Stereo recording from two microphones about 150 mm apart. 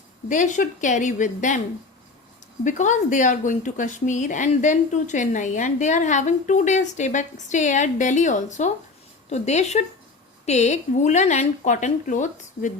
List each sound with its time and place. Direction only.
0.3 s speech: 55° left (ahead or behind)
2.6 s a woman's voice: 55° left (ahead or behind)